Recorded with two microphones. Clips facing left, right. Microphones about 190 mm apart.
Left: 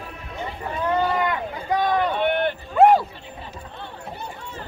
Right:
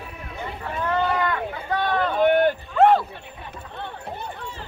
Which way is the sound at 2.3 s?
40° right (ahead or behind).